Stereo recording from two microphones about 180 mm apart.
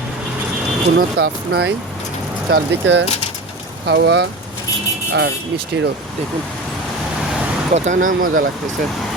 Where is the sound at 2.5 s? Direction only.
70° right (ahead or behind).